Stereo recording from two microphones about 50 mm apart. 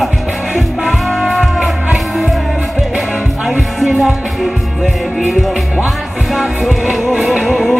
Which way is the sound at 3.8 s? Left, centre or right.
Centre.